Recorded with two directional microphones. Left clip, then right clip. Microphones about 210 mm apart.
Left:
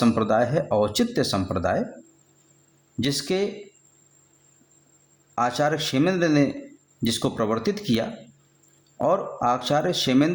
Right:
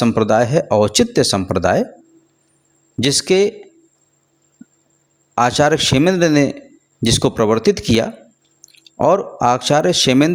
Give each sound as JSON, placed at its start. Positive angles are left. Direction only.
{"t": 0.0, "sound": "speech", "side_deg": -35}
{"t": 3.0, "sound": "speech", "side_deg": -35}
{"t": 5.3, "sound": "speech", "side_deg": -35}